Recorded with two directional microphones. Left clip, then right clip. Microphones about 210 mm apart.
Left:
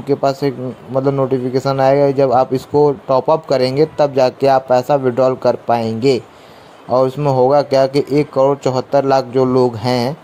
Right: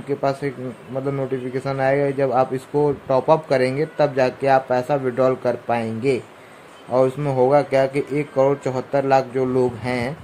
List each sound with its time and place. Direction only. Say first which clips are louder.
0.1 s a man's voice: left 7 dB; 25° left (ahead or behind)